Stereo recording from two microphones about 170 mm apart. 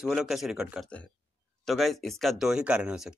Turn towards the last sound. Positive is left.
turn(degrees=-5)  # may be behind; listen again after turning